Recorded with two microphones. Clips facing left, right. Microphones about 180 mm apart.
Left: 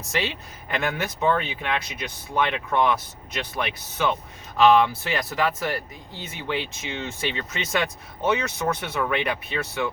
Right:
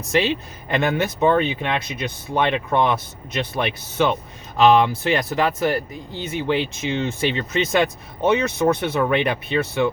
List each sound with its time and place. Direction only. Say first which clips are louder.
0.1 s speech: right 8 dB; 25° right (ahead or behind)